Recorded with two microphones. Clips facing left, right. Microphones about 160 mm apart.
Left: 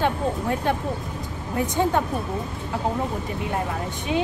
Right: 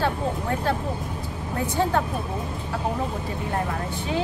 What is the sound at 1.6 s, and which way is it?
Speech, 15° left (ahead or behind).